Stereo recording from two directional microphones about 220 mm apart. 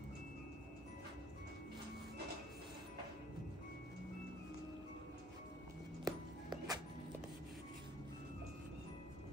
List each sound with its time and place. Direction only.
6.0 s music: 15° right (ahead or behind)